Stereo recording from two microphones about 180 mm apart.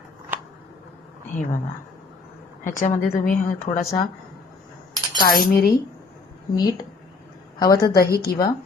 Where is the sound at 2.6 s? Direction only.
45° left (ahead or behind).